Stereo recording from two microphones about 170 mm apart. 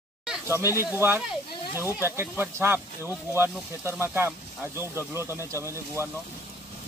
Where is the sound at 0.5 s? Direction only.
15° right (ahead or behind).